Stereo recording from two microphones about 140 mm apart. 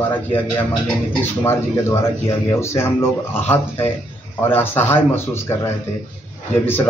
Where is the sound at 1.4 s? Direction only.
20° left (ahead or behind).